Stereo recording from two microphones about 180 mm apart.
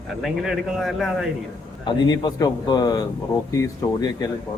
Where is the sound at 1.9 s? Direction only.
25° left (ahead or behind).